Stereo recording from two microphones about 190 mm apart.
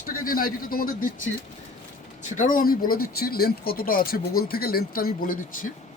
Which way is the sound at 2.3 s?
45° left (ahead or behind).